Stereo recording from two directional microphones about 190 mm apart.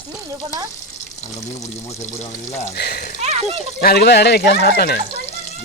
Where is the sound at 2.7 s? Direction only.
55° left (ahead or behind).